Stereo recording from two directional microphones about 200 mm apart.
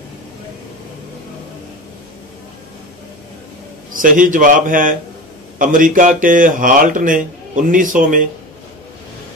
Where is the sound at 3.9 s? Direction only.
40° right (ahead or behind).